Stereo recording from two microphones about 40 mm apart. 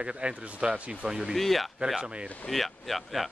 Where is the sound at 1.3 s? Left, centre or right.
Centre.